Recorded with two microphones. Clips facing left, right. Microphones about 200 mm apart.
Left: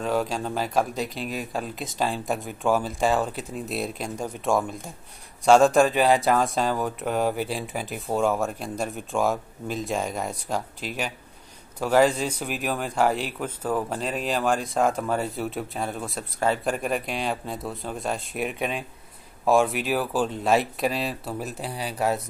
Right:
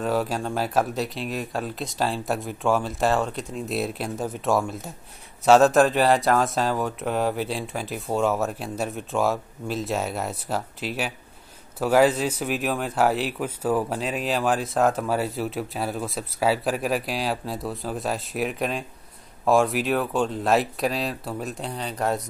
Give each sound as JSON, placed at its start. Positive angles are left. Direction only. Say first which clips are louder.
{"t": 0.0, "sound": "speech", "louder": "right 1 dB", "side_deg": -5}